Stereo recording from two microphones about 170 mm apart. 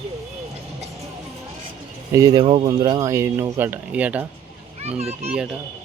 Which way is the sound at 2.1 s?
20° right (ahead or behind).